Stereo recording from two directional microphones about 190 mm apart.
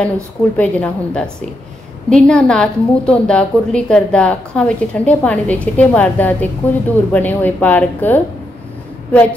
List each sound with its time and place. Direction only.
0.6 s a woman's voice: 5° left (ahead or behind)